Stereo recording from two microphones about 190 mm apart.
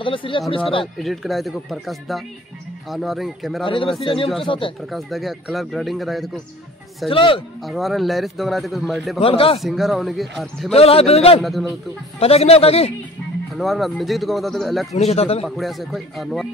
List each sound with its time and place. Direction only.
0.0 s a man's voice: 25° left (ahead or behind)
0.9 s a man's voice: centre (ahead or behind)
3.6 s a man's voice: 25° left (ahead or behind)
4.8 s a man's voice: centre (ahead or behind)
7.1 s a man's voice: 25° left (ahead or behind)
7.6 s a man's voice: centre (ahead or behind)
9.2 s a man's voice: 30° left (ahead or behind)
9.6 s a man's voice: centre (ahead or behind)
10.7 s speech: 30° left (ahead or behind)
13.6 s a man's voice: centre (ahead or behind)
15.0 s speech: 35° left (ahead or behind)
15.4 s a man's voice: centre (ahead or behind)